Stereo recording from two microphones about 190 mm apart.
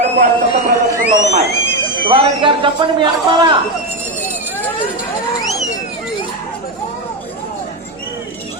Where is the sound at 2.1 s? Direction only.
30° right (ahead or behind).